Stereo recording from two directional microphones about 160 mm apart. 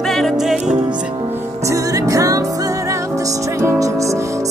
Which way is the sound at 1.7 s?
20° right (ahead or behind).